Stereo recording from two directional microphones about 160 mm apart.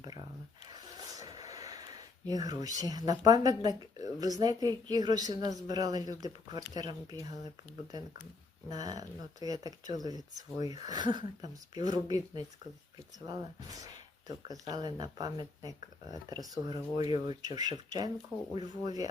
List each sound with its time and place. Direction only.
0.7 s a sound: 25° right (ahead or behind)
2.2 s speech: 25° right (ahead or behind)
8.7 s speech: 25° right (ahead or behind)